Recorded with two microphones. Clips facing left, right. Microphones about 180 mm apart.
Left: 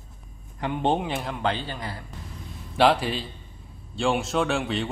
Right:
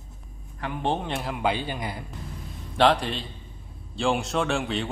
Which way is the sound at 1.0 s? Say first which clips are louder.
Even; centre (ahead or behind).